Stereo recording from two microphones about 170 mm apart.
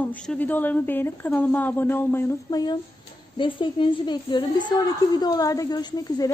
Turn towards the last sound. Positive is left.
turn(degrees=25)  # may be behind; listen again after turning